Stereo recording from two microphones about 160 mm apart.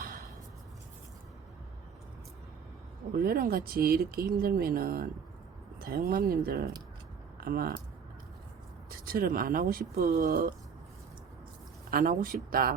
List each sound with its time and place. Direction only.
0.0 s a sound: 65° right (ahead or behind)
3.1 s speech: 65° right (ahead or behind)
8.9 s speech: 65° right (ahead or behind)
11.9 s speech: 65° right (ahead or behind)